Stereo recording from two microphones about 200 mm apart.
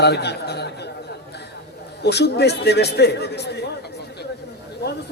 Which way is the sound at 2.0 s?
55° left (ahead or behind).